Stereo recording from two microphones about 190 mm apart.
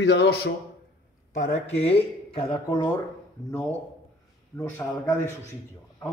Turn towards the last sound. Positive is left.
turn(degrees=15)  # may be behind; listen again after turning